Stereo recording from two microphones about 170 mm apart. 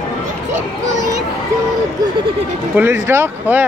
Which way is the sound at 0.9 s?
20° right (ahead or behind).